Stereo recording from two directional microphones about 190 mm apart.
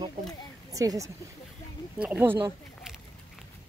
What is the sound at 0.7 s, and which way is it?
Speech, 15° right (ahead or behind).